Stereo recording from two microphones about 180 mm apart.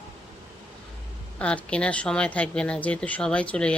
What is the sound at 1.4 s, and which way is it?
Speech, 5° left (ahead or behind).